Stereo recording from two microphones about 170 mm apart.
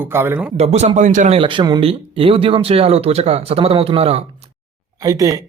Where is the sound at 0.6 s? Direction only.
40° right (ahead or behind).